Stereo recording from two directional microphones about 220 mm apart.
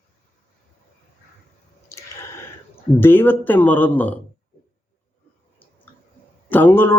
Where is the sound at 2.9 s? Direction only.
10° left (ahead or behind).